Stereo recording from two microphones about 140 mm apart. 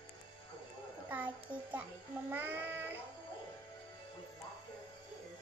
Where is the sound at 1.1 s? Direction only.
10° right (ahead or behind).